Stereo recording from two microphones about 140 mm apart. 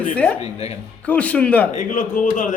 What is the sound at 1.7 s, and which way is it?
Speech, 60° left (ahead or behind).